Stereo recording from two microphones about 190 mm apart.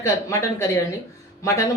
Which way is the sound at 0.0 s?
15° left (ahead or behind).